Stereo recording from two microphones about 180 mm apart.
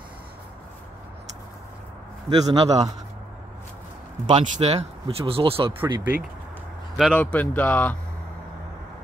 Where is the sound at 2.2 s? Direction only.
20° right (ahead or behind).